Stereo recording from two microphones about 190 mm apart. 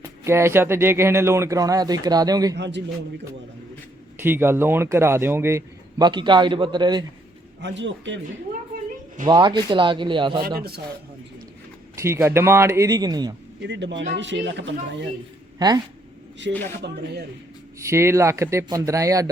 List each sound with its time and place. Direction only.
0.0 s a man's voice: 15° right (ahead or behind)
2.6 s a man's voice: 65° right (ahead or behind)
4.2 s a man's voice: 10° right (ahead or behind)
7.6 s a man's voice: 70° right (ahead or behind)
9.2 s speech: 25° right (ahead or behind)
11.9 s a man's voice: 15° right (ahead or behind)
13.6 s a man's voice: 70° right (ahead or behind)
15.5 s speech: 20° right (ahead or behind)
16.4 s a man's voice: 70° right (ahead or behind)
16.8 s speech: 60° right (ahead or behind)
17.7 s a man's voice: 15° right (ahead or behind)